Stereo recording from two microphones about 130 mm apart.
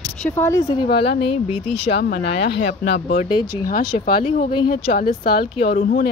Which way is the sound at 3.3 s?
35° left (ahead or behind).